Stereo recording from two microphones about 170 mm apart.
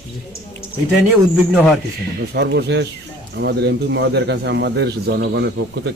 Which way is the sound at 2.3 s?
80° right.